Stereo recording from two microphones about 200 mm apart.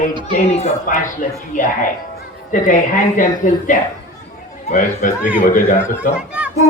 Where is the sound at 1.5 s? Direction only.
40° left (ahead or behind).